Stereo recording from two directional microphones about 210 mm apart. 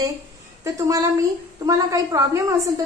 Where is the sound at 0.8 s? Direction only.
15° right (ahead or behind).